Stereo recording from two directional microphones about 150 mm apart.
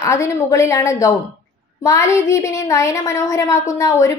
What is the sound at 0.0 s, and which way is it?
A woman's voice, 20° left (ahead or behind).